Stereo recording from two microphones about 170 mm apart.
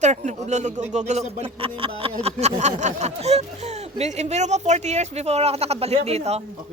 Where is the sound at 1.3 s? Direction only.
35° right (ahead or behind).